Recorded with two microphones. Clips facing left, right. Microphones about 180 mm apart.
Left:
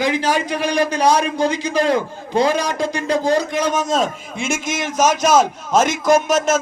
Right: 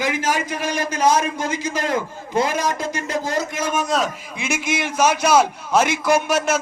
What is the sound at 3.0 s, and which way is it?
A man's voice, 25° left (ahead or behind).